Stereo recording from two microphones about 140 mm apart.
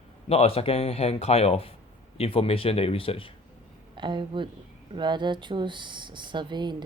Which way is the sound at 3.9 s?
35° right (ahead or behind).